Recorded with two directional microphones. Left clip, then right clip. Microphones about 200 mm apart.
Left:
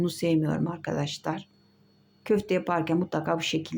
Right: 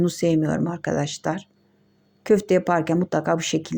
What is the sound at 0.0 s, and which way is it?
A woman's voice, 20° right (ahead or behind).